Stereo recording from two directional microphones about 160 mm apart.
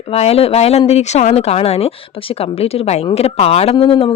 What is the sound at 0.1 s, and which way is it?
A woman's voice, 40° left (ahead or behind).